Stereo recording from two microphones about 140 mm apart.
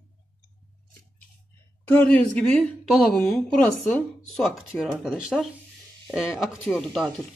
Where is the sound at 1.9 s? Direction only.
10° left (ahead or behind).